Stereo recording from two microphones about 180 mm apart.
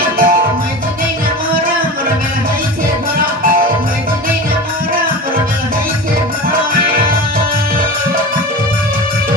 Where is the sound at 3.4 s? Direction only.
50° right (ahead or behind).